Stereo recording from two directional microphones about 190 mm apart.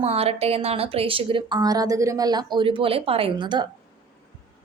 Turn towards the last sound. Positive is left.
turn(degrees=-25)  # may be behind; listen again after turning